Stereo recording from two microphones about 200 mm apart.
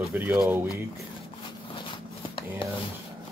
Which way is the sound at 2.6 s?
25° left (ahead or behind).